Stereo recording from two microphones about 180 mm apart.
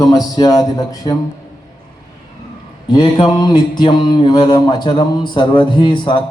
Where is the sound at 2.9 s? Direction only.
25° left (ahead or behind).